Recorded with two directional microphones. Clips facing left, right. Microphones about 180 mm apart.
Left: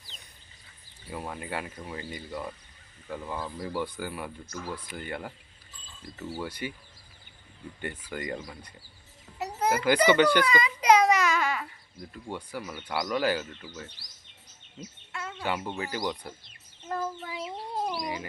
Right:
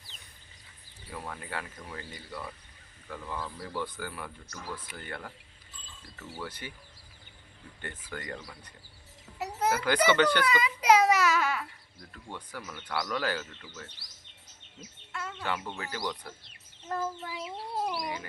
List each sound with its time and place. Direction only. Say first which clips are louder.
1.1 s speech: left 4 dB; 15° left (ahead or behind)
7.8 s speech: left 5 dB; 15° left (ahead or behind)
10.4 s a child's voice: left 2 dB; 5° right (ahead or behind)
11.9 s speech: left 6 dB; 15° left (ahead or behind)
15.1 s speech: left 2 dB; 5° left (ahead or behind)
16.9 s child singing: left 1 dB; centre (ahead or behind)
18.0 s speech: left 2 dB; 15° left (ahead or behind)